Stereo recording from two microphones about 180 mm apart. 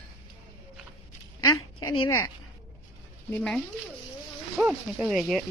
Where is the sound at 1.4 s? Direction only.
20° left (ahead or behind).